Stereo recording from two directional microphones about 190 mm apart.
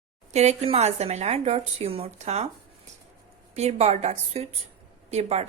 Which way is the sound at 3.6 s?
35° right (ahead or behind).